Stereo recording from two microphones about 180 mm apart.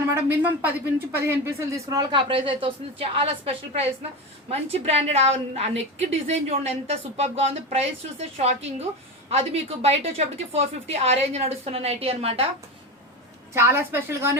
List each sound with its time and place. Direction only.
0.1 s a woman's voice: 10° right (ahead or behind); by 12.5 s 30° right (ahead or behind)
13.5 s a woman's voice: 15° right (ahead or behind)